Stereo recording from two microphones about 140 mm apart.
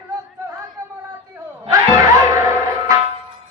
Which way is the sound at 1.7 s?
25° right (ahead or behind).